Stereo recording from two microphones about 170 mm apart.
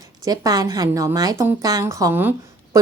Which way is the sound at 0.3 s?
20° right (ahead or behind).